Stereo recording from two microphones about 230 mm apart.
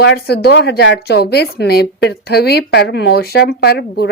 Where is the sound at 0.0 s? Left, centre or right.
Left.